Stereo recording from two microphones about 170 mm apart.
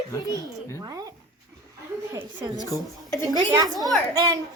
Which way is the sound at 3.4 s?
20° right (ahead or behind).